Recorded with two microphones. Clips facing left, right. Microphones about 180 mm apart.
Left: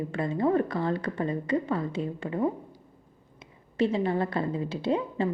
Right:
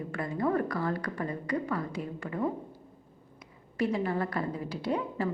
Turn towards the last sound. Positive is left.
turn(degrees=25)  # may be behind; listen again after turning